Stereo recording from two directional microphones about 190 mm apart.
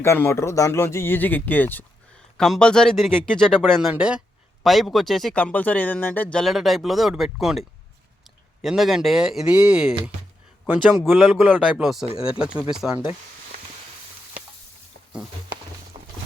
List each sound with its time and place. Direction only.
0.0 s speech: 15° left (ahead or behind)
8.6 s speech: centre (ahead or behind)
15.9 s a sound: 25° right (ahead or behind)